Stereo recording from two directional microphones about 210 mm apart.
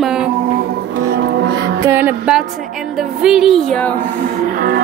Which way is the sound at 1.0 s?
50° right (ahead or behind).